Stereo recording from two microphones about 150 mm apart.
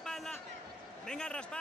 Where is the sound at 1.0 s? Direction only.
5° left (ahead or behind).